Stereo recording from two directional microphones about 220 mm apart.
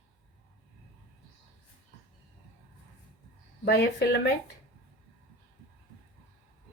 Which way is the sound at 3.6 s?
45° left (ahead or behind).